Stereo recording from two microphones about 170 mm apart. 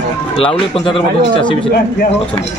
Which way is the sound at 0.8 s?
30° left (ahead or behind).